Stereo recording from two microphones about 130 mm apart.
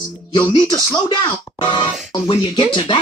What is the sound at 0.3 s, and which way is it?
Speech, 35° left (ahead or behind).